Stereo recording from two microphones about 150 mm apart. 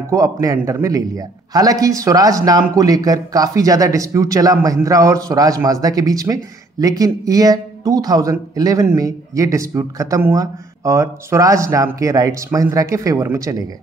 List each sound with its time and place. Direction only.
0.1 s a man's voice: 25° right (ahead or behind)